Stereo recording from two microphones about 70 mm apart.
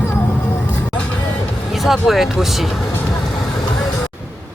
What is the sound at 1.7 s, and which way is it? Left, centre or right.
Speech, centre.